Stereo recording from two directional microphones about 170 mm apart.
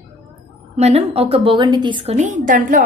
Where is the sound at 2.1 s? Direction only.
50° right (ahead or behind).